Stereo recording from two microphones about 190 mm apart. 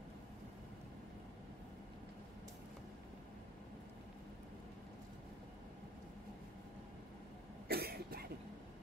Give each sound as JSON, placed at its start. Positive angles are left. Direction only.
{"t": 7.6, "sound": "cough", "side_deg": -55}